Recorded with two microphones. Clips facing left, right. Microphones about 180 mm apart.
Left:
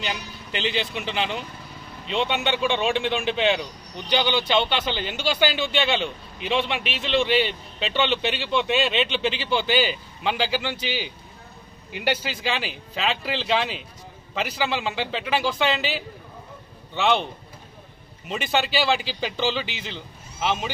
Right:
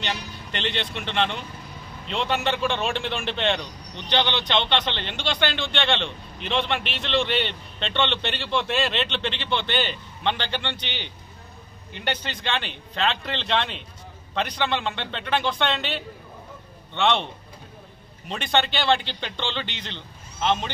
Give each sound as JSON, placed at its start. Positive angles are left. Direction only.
{"t": 0.0, "sound": "a man's voice", "side_deg": 5}
{"t": 18.3, "sound": "a man's voice", "side_deg": 5}